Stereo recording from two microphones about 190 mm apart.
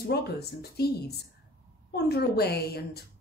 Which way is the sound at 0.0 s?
55° left (ahead or behind).